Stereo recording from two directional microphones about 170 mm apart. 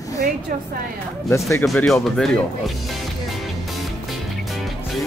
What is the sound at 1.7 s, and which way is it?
Speech, centre (ahead or behind).